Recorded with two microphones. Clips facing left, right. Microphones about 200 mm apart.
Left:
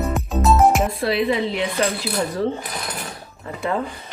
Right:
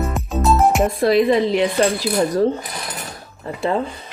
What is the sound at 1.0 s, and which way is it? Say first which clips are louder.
Speech: right 5 dB; 45° right (ahead or behind).